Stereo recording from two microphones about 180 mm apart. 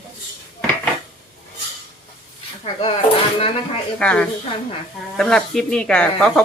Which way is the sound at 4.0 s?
5° left (ahead or behind).